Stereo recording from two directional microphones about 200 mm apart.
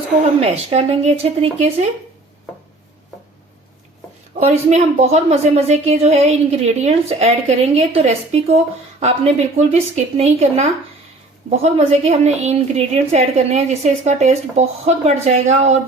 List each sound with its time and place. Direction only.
0.3 s a woman's voice: 30° right (ahead or behind)
4.4 s a woman's voice: 35° right (ahead or behind)